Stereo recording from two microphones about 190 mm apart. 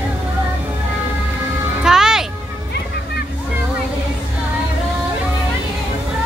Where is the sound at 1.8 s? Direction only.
5° right (ahead or behind).